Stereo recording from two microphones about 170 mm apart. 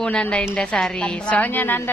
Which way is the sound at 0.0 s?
5° left (ahead or behind).